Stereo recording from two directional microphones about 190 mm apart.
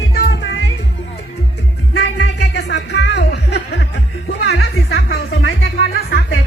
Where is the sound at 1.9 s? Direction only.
65° left (ahead or behind).